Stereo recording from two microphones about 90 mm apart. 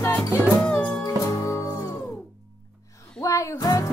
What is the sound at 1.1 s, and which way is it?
Music, 35° left (ahead or behind).